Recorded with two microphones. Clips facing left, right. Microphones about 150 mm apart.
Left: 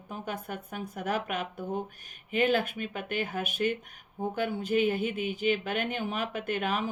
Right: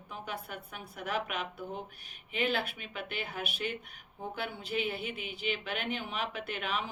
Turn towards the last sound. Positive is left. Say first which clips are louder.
# left 6 dB
turn(degrees=45)  # may be behind; listen again after turning